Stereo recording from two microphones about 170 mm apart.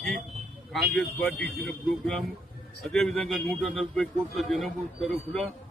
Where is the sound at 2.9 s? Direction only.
5° left (ahead or behind).